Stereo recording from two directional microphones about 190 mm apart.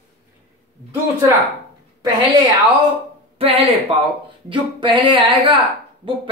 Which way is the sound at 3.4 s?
30° right (ahead or behind).